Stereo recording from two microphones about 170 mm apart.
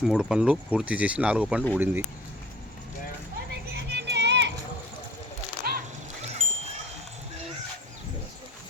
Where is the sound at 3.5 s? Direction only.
85° right.